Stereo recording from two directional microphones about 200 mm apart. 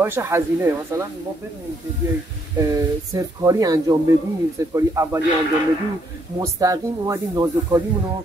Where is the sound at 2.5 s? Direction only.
15° right (ahead or behind).